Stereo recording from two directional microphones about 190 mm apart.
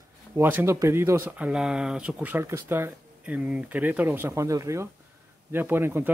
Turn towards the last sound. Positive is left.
turn(degrees=-10)  # may be behind; listen again after turning